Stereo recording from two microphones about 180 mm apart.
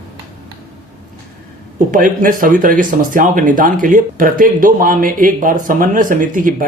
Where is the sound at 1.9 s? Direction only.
50° right (ahead or behind).